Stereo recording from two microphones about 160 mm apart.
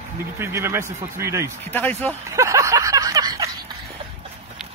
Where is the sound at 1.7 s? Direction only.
10° left (ahead or behind).